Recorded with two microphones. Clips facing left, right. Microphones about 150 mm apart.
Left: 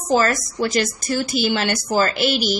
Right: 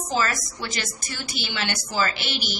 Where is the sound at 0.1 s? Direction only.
45° left (ahead or behind).